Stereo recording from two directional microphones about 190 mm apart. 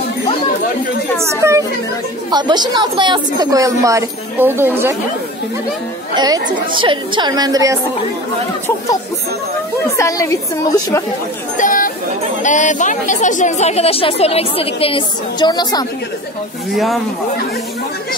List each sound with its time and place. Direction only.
1.4 s a woman's voice: 15° right (ahead or behind)
6.1 s a woman's voice: 20° right (ahead or behind)
9.9 s a woman's voice: 15° left (ahead or behind)
11.5 s a woman's voice: 45° left (ahead or behind); by 15.8 s 20° left (ahead or behind)
16.7 s speech: centre (ahead or behind)